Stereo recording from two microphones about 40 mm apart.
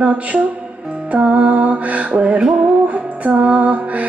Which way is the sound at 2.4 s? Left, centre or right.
Right.